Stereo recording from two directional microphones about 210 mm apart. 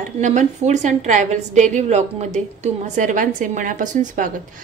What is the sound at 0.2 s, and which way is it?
A woman's voice, 35° right (ahead or behind).